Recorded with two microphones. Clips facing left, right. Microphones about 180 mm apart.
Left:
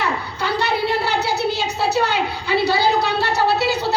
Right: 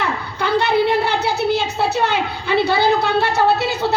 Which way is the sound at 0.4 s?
55° right (ahead or behind).